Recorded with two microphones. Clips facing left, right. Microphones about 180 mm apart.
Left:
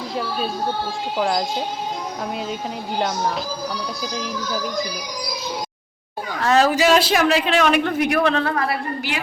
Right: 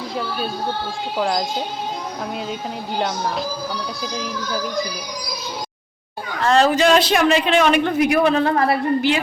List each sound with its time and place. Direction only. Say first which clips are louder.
0.2 s a man's voice: left 1 dB; centre (ahead or behind)
3.0 s a man's voice: even; centre (ahead or behind)
6.4 s a man's voice: right 1 dB; 5° left (ahead or behind)
8.4 s a woman's voice: right 5 dB; 25° right (ahead or behind)